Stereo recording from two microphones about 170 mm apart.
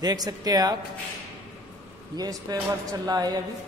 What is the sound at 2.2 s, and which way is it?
Speech, 25° right (ahead or behind).